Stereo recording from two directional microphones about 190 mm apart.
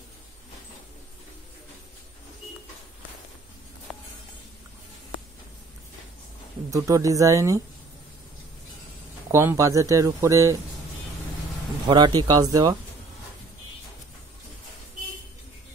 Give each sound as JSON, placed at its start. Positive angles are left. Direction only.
{"t": 3.9, "sound": "a sound", "side_deg": 0}
{"t": 6.7, "sound": "speech", "side_deg": -15}
{"t": 9.3, "sound": "speech", "side_deg": -15}
{"t": 11.9, "sound": "speech", "side_deg": -20}